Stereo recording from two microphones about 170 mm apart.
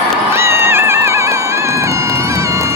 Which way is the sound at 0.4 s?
15° right (ahead or behind).